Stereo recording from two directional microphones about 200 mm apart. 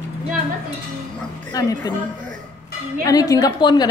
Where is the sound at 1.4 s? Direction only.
15° left (ahead or behind).